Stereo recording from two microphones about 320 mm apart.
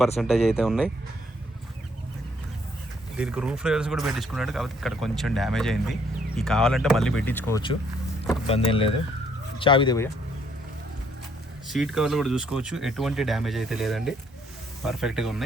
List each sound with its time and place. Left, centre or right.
0.2 s speech: centre
3.2 s speech: centre
11.7 s speech: centre